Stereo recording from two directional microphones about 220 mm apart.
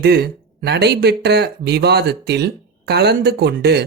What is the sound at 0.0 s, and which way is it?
Speech, 50° right (ahead or behind).